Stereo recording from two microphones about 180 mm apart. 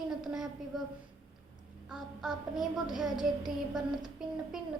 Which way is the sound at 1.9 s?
5° right (ahead or behind).